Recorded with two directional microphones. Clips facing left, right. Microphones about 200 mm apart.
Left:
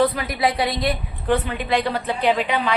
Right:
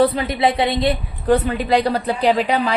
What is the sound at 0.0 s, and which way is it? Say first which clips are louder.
A woman's voice: right 3 dB; 30° right (ahead or behind).